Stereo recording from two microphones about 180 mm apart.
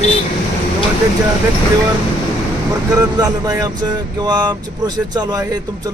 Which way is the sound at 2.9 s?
20° right (ahead or behind).